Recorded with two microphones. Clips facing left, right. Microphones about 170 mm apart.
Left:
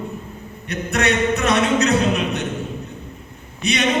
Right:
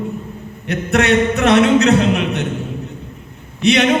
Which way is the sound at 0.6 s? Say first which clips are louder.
Right 5 dB; 60° right (ahead or behind).